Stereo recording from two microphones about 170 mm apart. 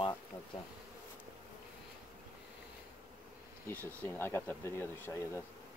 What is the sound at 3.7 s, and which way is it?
Speech, 10° left (ahead or behind).